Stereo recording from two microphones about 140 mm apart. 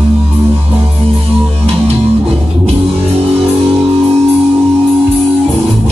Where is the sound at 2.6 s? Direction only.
45° right (ahead or behind).